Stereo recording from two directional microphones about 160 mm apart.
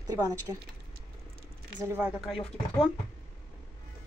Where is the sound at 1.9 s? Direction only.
10° right (ahead or behind).